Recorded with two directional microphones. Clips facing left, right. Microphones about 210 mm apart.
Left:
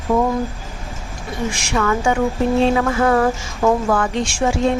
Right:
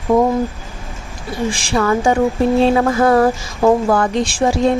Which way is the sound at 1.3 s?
30° right (ahead or behind).